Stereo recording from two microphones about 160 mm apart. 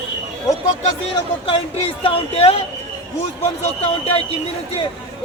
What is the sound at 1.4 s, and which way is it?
A man's voice, 35° left (ahead or behind).